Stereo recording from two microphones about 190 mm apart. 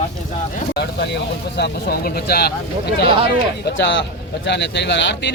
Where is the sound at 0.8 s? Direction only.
60° left (ahead or behind).